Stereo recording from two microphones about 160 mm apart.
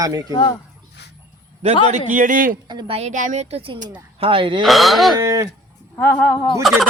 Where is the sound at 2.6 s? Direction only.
25° right (ahead or behind).